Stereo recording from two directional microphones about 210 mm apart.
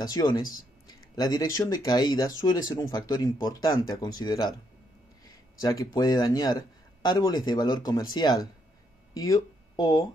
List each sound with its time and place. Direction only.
0.0 s speech: 15° left (ahead or behind)
5.2 s a sound: 15° left (ahead or behind)
5.9 s speech: 15° left (ahead or behind)